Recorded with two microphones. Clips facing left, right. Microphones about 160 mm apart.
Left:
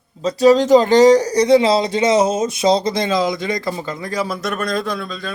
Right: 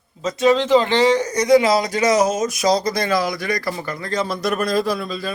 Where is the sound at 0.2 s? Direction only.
35° left (ahead or behind).